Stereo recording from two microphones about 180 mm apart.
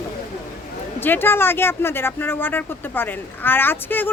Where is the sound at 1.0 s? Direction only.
10° left (ahead or behind).